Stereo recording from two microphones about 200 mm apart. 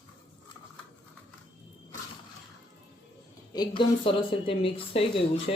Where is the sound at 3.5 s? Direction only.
25° left (ahead or behind).